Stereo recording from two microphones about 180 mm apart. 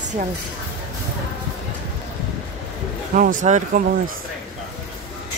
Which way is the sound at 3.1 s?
45° right (ahead or behind).